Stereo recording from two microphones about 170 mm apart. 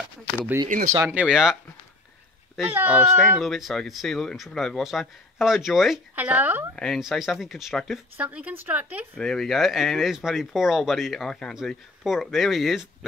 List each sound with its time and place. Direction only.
0.9 s a woman's voice: 15° right (ahead or behind)
1.2 s speech: 5° right (ahead or behind)
6.7 s a woman's voice: 5° left (ahead or behind)
9.1 s speech: 5° left (ahead or behind)